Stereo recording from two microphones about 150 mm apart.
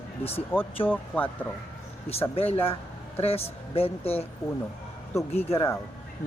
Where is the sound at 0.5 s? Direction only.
15° left (ahead or behind).